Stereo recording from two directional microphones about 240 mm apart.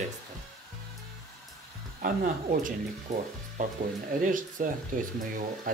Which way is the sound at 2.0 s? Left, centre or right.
Right.